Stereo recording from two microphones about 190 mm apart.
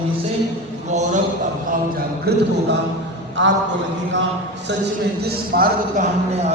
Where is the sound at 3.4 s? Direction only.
70° right (ahead or behind).